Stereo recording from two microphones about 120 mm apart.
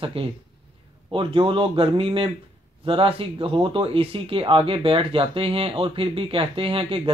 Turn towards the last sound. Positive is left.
turn(degrees=-50)  # may be behind; listen again after turning